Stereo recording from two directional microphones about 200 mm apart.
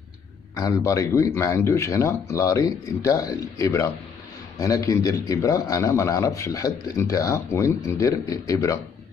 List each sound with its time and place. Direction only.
0.6 s speech: 15° left (ahead or behind)